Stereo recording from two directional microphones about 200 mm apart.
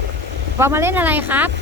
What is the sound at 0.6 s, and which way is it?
Speech, 10° right (ahead or behind).